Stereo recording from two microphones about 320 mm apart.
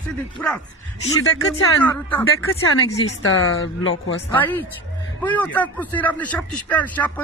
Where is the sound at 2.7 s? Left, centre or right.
Left.